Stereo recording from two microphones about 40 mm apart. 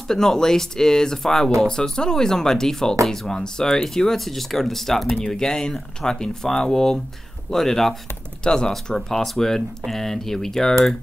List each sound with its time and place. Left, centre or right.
0.1 s speech: centre
5.3 s speech: centre